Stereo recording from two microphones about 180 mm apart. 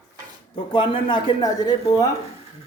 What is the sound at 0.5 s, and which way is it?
A man's voice, 30° left (ahead or behind).